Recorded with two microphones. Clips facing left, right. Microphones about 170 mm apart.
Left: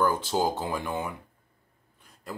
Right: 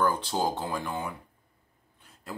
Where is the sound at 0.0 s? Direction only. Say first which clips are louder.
Left 2 dB; 5° left (ahead or behind).